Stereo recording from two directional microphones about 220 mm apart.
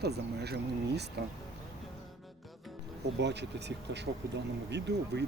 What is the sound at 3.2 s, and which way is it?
Speech, 50° right (ahead or behind).